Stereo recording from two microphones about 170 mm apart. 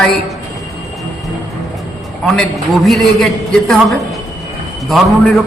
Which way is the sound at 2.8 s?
Centre (ahead or behind).